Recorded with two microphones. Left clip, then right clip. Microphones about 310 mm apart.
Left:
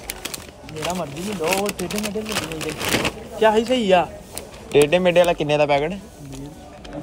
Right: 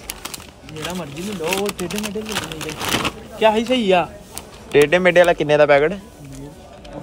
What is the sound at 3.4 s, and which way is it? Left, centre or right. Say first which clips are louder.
Speech: right 1 dB; right.